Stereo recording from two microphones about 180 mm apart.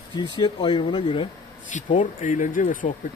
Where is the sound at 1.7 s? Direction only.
45° left (ahead or behind).